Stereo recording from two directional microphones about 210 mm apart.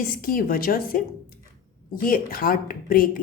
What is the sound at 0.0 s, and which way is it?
A woman's voice, 40° left (ahead or behind).